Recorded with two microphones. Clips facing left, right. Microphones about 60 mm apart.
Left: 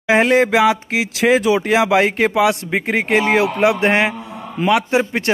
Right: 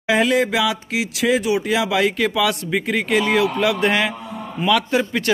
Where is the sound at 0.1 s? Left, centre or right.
Left.